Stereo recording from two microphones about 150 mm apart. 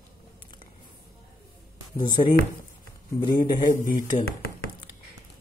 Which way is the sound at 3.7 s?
60° left (ahead or behind).